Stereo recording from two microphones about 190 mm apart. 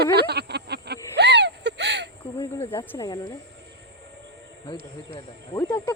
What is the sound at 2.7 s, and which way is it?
Speech, 10° left (ahead or behind).